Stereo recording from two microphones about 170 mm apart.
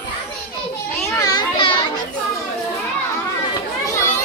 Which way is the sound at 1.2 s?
25° left (ahead or behind).